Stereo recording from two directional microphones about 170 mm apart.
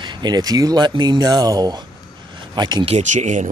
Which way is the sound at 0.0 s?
25° right (ahead or behind).